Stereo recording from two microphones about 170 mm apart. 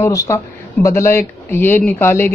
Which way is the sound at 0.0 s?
15° left (ahead or behind).